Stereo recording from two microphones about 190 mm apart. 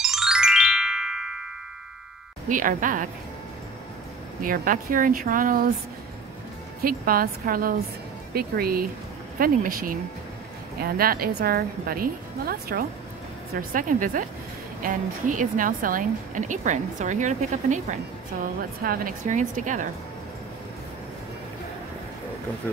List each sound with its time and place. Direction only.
0.0 s music: 5° right (ahead or behind)
2.4 s a woman's voice: 45° right (ahead or behind)
4.4 s a woman's voice: 45° right (ahead or behind)
6.8 s a woman's voice: 50° right (ahead or behind)